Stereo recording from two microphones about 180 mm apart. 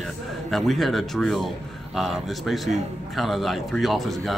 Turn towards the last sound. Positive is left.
turn(degrees=0)  # may be behind; listen again after turning